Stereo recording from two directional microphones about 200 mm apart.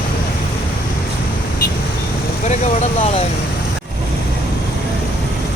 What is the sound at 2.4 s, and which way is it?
Speech, 35° left (ahead or behind).